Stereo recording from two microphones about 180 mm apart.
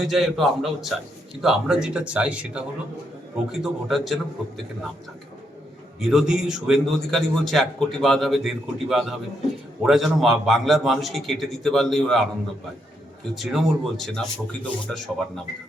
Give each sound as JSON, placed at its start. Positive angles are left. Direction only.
{"t": 0.0, "sound": "a man's voice", "side_deg": 0}
{"t": 6.0, "sound": "a man's voice", "side_deg": -5}
{"t": 13.3, "sound": "a man's voice", "side_deg": 0}